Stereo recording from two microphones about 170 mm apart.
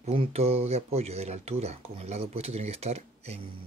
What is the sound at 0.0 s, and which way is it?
Speech, 35° right (ahead or behind).